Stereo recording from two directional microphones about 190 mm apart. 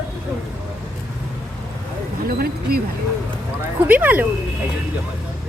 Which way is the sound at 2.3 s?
50° right (ahead or behind).